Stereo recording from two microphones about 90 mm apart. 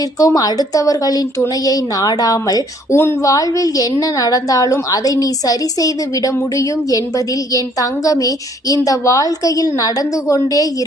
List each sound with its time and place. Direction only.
0.2 s a woman's voice: 45° left (ahead or behind)